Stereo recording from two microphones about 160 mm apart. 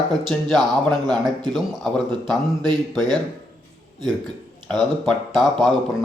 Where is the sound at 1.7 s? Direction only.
Centre (ahead or behind).